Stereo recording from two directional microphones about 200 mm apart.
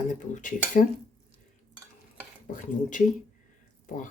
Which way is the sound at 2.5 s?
40° left (ahead or behind).